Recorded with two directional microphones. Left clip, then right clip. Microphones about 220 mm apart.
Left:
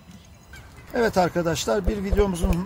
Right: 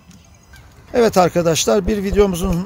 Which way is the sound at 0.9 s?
50° right (ahead or behind).